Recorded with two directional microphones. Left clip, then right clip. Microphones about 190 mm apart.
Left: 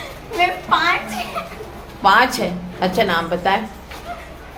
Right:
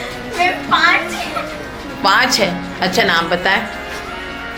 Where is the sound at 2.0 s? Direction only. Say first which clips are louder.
Right 1 dB; 5° right (ahead or behind).